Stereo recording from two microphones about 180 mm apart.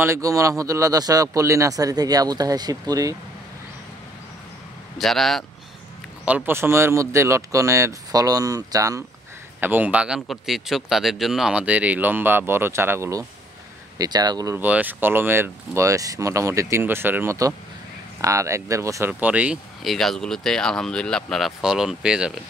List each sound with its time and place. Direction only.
0.0 s a man's voice: 15° right (ahead or behind)
4.9 s speech: centre (ahead or behind)
6.2 s speech: 10° right (ahead or behind)